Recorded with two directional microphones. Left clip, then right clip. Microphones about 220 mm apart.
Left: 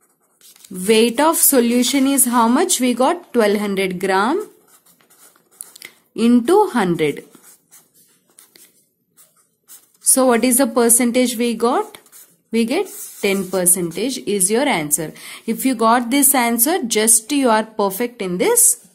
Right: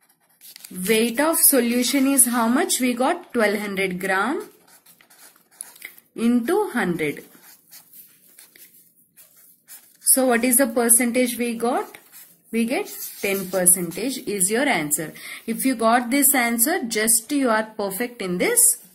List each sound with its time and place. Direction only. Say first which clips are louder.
0.8 s a woman's voice: left 6 dB; 45° left (ahead or behind)
4.6 s dog: right 1 dB; 5° right (ahead or behind)
5.8 s speech: left 7 dB; 45° left (ahead or behind)
10.1 s a woman's voice: left 4 dB; 45° left (ahead or behind)